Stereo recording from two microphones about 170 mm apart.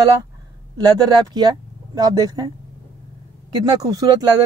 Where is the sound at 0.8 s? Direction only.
25° right (ahead or behind).